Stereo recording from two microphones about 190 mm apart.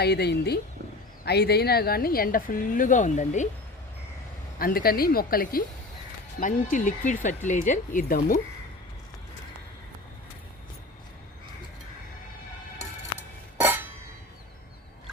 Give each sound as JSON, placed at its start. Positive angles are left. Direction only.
{"t": 0.0, "sound": "a woman's voice", "side_deg": 60}
{"t": 4.5, "sound": "a woman's voice", "side_deg": 50}
{"t": 13.6, "sound": "a sound", "side_deg": -10}